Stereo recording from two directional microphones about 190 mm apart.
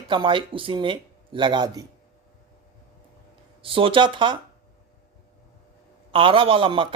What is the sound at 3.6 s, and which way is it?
Speech, 30° right (ahead or behind).